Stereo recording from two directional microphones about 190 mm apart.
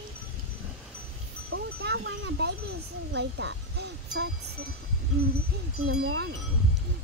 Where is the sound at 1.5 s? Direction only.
65° right (ahead or behind).